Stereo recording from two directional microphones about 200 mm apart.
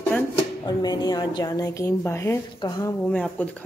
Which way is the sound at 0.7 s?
20° left (ahead or behind).